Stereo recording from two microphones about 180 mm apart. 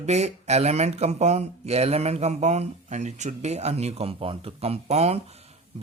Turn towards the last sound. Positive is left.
turn(degrees=-35)  # may be behind; listen again after turning